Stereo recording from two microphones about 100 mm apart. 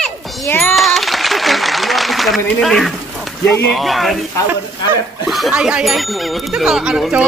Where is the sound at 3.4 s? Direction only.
20° left (ahead or behind).